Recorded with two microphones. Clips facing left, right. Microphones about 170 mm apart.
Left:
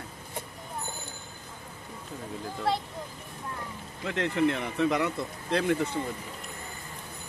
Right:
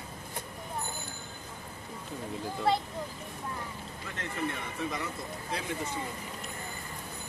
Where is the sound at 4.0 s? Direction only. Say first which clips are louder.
Left 10 dB; 85° left; by 5.8 s 65° left (ahead or behind).